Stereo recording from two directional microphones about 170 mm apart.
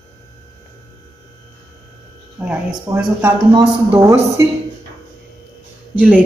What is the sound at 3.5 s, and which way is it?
Speech, 20° right (ahead or behind).